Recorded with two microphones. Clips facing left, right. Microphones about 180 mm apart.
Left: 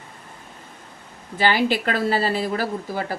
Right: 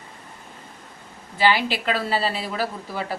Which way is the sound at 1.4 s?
45° left (ahead or behind).